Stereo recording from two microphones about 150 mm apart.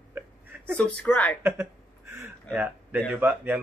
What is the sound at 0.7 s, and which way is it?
Speech, 5° left (ahead or behind).